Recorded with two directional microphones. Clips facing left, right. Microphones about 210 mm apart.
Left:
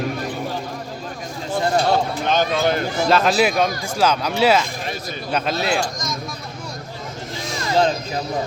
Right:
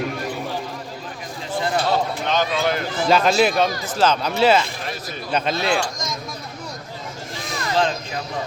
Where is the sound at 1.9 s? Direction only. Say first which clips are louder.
Left 2 dB; 45° left (ahead or behind).